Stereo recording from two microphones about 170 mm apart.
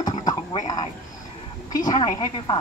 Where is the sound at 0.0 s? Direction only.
25° left (ahead or behind).